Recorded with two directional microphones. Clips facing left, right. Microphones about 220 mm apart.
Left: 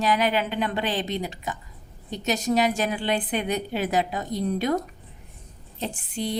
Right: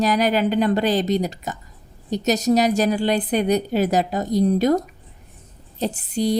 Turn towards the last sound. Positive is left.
turn(degrees=-40)  # may be behind; listen again after turning